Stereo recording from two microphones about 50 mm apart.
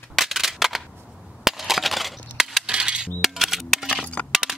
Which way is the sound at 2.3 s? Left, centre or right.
Centre.